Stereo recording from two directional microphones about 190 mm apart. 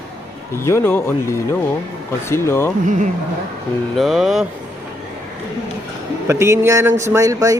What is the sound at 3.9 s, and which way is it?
Speech, centre (ahead or behind).